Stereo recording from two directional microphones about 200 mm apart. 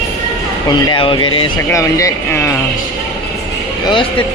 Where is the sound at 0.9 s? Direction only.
25° left (ahead or behind).